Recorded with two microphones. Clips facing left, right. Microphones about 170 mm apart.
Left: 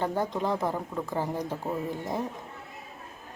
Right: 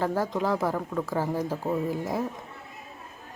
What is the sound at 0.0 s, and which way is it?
Speech, centre (ahead or behind).